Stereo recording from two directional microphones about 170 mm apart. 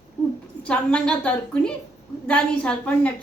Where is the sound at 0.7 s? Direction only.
5° left (ahead or behind).